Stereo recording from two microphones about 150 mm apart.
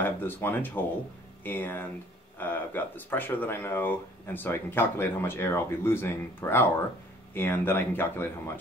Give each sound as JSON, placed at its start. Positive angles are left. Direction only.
{"t": 0.0, "sound": "speech", "side_deg": 15}